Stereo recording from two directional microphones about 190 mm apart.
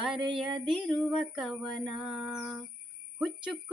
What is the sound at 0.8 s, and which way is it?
Singing, centre (ahead or behind).